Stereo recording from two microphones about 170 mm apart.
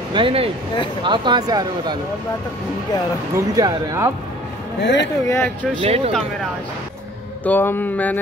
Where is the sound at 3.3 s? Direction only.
20° right (ahead or behind).